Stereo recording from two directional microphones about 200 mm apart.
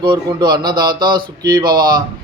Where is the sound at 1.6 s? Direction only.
45° right (ahead or behind).